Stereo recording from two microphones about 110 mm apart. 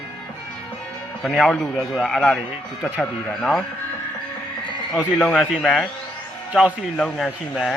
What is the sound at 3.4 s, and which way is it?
Speech, 5° left (ahead or behind).